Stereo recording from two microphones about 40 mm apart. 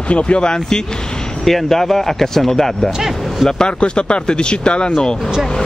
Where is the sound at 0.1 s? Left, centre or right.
Left.